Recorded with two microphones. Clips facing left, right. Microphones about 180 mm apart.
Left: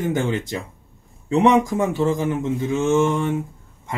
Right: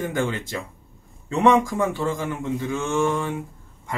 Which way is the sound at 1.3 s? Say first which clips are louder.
Left 2 dB; 20° left (ahead or behind).